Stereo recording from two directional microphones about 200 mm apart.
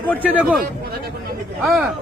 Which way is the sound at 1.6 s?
Centre (ahead or behind).